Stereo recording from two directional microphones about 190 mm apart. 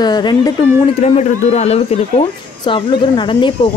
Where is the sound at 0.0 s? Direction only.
20° left (ahead or behind).